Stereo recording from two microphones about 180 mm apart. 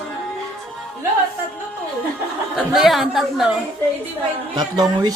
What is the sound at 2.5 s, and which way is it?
Speech, centre (ahead or behind).